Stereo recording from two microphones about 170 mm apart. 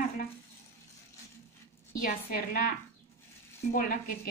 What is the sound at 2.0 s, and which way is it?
Speech, 60° left (ahead or behind).